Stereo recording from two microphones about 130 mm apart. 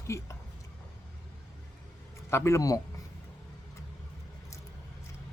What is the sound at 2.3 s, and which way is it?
Speech, 20° left (ahead or behind).